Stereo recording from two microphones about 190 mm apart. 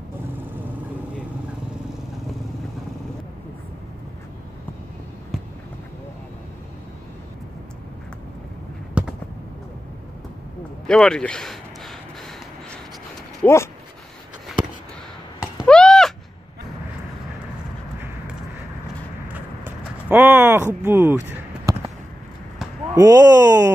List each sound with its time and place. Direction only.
9.0 s a sound: 5° right (ahead or behind)
10.9 s speech: 5° left (ahead or behind)
13.4 s speech: 15° left (ahead or behind)
15.6 s a sound: 5° left (ahead or behind)
19.2 s clip-clop: 10° right (ahead or behind)
22.9 s speech: 20° right (ahead or behind)